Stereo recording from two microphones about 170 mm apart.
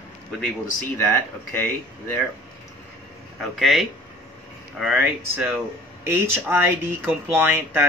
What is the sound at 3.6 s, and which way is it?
Speech, centre (ahead or behind).